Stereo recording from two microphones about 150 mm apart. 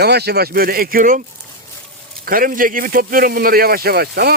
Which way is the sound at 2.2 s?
70° right (ahead or behind).